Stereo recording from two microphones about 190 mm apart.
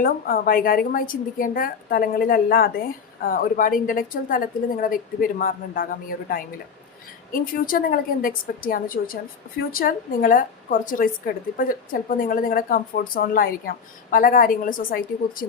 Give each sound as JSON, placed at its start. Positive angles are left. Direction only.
{"t": 0.0, "sound": "a woman's voice", "side_deg": 50}